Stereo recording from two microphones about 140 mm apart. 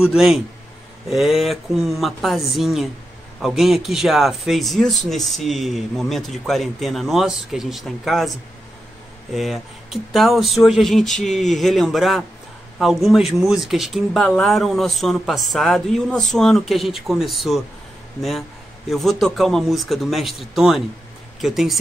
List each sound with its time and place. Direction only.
0.0 s speech: 5° right (ahead or behind)
9.3 s speech: centre (ahead or behind)
18.9 s speech: centre (ahead or behind)